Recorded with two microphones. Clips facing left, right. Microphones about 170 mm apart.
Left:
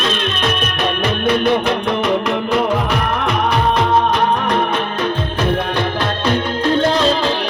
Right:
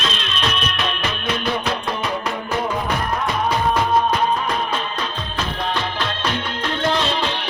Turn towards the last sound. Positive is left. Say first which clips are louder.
# left 6 dB
turn(degrees=35)  # may be behind; listen again after turning